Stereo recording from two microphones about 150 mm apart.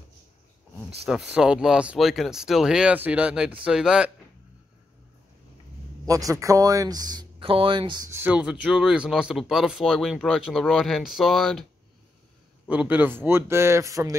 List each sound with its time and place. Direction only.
0.7 s speech: 5° right (ahead or behind)
6.0 s speech: 20° right (ahead or behind)
8.1 s speech: 10° right (ahead or behind)
12.6 s speech: 10° right (ahead or behind)